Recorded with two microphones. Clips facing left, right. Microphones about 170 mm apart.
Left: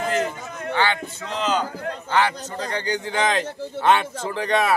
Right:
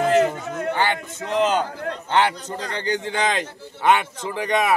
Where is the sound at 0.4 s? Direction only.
70° right (ahead or behind).